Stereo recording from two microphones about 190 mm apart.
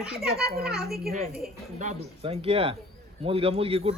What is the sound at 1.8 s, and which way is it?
Speech, 35° right (ahead or behind).